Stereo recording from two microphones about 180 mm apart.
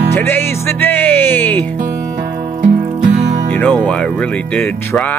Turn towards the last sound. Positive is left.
turn(degrees=5)  # may be behind; listen again after turning